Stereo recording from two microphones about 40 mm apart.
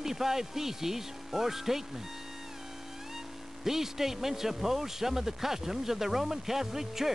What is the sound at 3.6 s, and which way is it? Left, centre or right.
A man's voice, centre.